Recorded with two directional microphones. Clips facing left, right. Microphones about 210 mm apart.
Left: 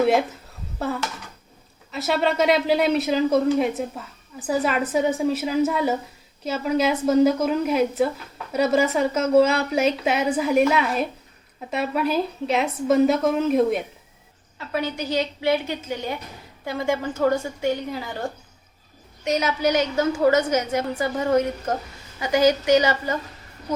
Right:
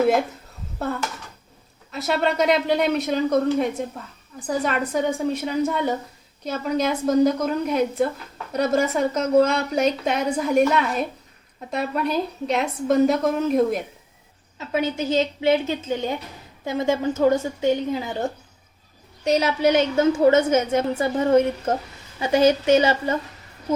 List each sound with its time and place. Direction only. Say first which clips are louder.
0.0 s a woman's voice: even; centre (ahead or behind)
14.7 s a woman's voice: right 3 dB; 20° right (ahead or behind)
19.2 s a woman's voice: right 3 dB; 30° right (ahead or behind)